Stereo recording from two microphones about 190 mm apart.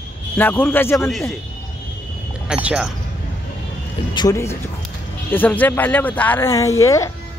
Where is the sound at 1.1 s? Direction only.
Centre (ahead or behind).